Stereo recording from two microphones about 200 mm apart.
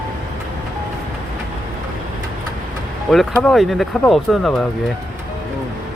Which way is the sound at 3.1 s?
Centre (ahead or behind).